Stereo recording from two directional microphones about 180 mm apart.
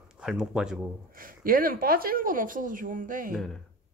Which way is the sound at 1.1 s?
50° right (ahead or behind).